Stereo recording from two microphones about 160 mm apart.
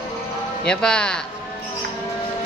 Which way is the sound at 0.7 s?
5° left (ahead or behind).